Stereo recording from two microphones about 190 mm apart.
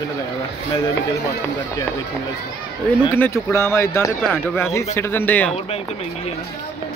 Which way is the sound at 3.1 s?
15° left (ahead or behind).